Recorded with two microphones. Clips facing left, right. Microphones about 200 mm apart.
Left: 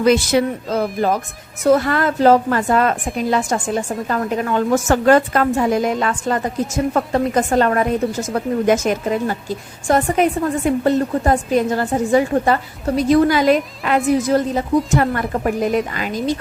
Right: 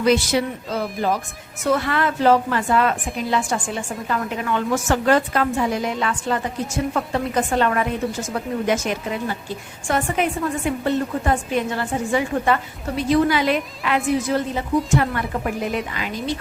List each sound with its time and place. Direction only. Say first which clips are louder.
0.0 s a woman's voice: left 4 dB; 50° left (ahead or behind)